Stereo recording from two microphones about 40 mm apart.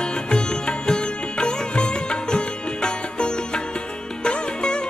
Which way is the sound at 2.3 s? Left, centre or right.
Left.